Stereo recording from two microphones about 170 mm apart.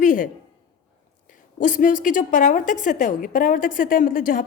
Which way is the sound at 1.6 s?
50° left (ahead or behind).